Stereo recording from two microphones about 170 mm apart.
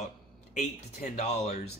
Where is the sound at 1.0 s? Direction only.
45° left (ahead or behind).